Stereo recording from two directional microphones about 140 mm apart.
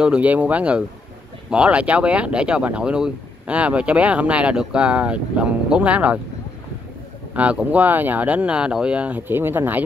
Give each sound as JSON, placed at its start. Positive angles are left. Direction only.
{"t": 0.0, "sound": "speech", "side_deg": -10}
{"t": 7.3, "sound": "speech", "side_deg": -10}